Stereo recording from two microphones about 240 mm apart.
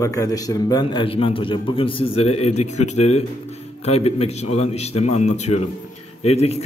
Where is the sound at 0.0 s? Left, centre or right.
Centre.